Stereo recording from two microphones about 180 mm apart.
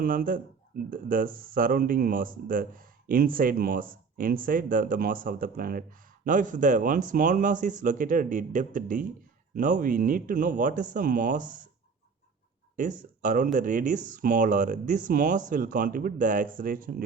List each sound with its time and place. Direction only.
0.0 s speech: 50° right (ahead or behind)
12.7 s speech: 45° right (ahead or behind)